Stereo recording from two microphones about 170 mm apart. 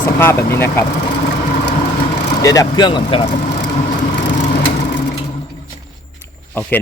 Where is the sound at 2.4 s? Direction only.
20° left (ahead or behind).